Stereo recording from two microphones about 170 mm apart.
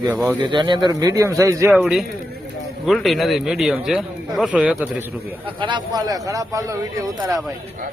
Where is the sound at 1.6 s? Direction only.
Centre (ahead or behind).